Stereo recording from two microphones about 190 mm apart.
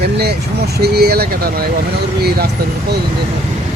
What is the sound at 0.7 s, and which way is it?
Speech, 60° right (ahead or behind).